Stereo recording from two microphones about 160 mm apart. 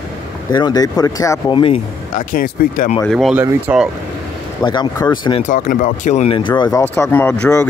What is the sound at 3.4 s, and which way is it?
Speech, 10° right (ahead or behind).